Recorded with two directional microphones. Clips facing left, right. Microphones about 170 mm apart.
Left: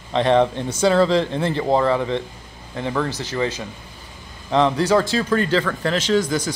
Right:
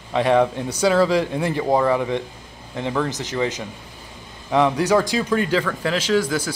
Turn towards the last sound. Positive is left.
turn(degrees=-5)  # may be behind; listen again after turning